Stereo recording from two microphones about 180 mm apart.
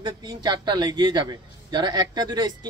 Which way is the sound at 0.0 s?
25° right (ahead or behind).